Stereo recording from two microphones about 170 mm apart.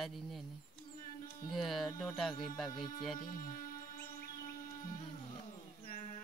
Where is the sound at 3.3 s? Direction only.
55° left (ahead or behind).